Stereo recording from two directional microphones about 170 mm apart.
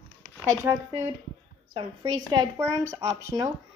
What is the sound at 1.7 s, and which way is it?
Speech, 30° right (ahead or behind).